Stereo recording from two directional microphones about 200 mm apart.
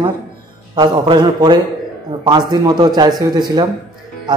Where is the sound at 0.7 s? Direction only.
20° right (ahead or behind).